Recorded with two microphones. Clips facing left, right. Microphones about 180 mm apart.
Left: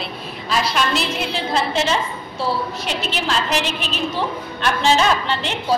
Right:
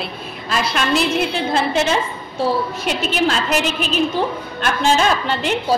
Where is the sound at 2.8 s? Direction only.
50° right (ahead or behind).